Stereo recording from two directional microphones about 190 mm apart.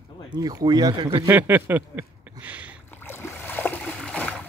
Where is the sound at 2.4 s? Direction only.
5° right (ahead or behind).